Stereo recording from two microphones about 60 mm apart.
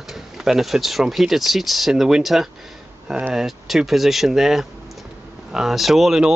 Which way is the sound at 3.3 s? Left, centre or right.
Centre.